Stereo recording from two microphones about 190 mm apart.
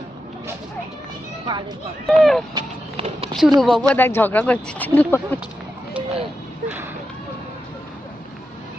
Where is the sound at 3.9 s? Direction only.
10° left (ahead or behind).